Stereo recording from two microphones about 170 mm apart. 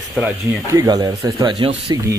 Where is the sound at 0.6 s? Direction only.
20° right (ahead or behind).